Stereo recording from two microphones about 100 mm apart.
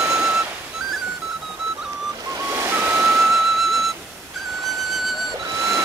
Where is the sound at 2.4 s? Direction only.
30° right (ahead or behind).